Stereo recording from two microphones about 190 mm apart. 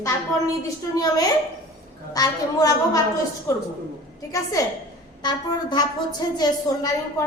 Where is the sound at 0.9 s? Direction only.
20° left (ahead or behind).